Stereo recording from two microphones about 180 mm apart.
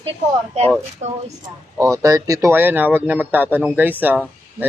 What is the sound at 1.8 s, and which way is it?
A woman's voice, 20° right (ahead or behind).